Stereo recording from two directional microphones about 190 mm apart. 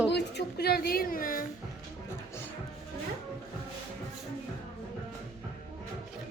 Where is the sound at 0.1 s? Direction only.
60° left (ahead or behind).